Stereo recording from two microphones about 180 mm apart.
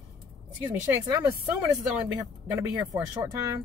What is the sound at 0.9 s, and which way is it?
Speech, 15° right (ahead or behind).